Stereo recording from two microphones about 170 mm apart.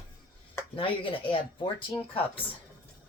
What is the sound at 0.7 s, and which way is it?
Speech, 30° left (ahead or behind).